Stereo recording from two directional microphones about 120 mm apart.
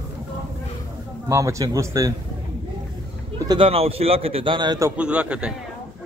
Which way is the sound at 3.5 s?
50° right (ahead or behind).